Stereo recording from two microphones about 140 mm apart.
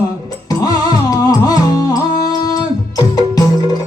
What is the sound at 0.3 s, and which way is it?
Music, 25° left (ahead or behind).